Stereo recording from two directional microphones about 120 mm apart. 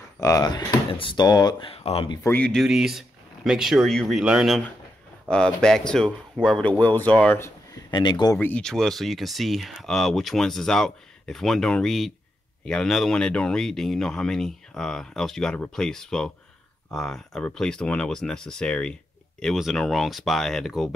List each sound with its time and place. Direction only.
0.2 s speech: 25° left (ahead or behind)
0.5 s speech: 40° left (ahead or behind)
1.7 s speech: 55° left (ahead or behind)
2.2 s a man's voice: 15° left (ahead or behind)
2.5 s speech: 5° right (ahead or behind)
5.3 s a man's voice: 5° left (ahead or behind); by 7.8 s 20° left (ahead or behind)
7.9 s speech: 35° left (ahead or behind)
8.4 s speech: 10° left (ahead or behind)